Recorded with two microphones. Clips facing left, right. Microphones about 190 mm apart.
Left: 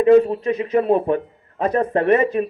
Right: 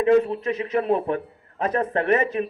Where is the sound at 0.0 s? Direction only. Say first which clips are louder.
Left 5 dB; 35° left (ahead or behind).